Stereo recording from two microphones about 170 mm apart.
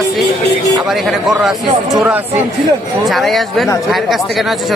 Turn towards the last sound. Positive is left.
turn(degrees=0)  # may be behind; listen again after turning